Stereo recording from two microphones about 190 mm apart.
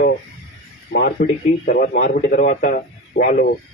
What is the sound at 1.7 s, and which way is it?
A man's voice, 45° left (ahead or behind).